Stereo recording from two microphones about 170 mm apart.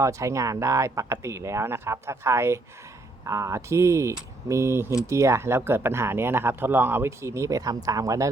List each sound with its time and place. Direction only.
0.0 s speech: 15° right (ahead or behind)